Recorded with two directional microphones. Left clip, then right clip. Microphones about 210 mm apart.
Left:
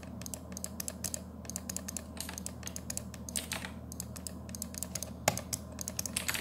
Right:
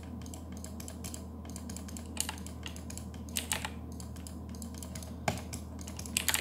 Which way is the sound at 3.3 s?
35° right (ahead or behind).